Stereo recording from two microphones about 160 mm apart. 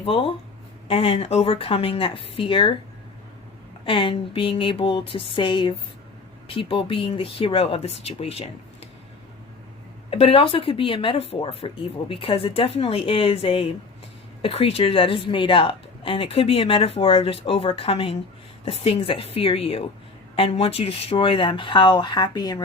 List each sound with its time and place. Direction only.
0.0 s a woman's voice: 35° left (ahead or behind)
3.8 s a woman's voice: 35° left (ahead or behind)
10.1 s a woman's voice: 40° left (ahead or behind)